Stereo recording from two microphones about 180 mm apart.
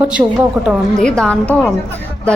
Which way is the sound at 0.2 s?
20° right (ahead or behind).